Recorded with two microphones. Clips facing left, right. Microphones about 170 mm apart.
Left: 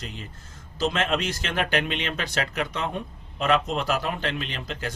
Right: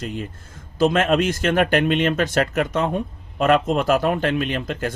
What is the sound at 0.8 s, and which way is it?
Speech, 50° right (ahead or behind).